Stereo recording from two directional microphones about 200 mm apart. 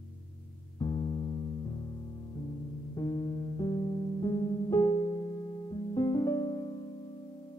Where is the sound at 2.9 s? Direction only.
20° left (ahead or behind).